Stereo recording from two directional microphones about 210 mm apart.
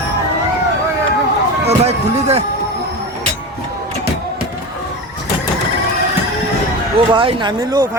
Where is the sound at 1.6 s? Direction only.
30° right (ahead or behind).